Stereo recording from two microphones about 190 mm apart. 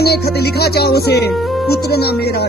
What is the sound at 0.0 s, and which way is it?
Speech, 55° left (ahead or behind).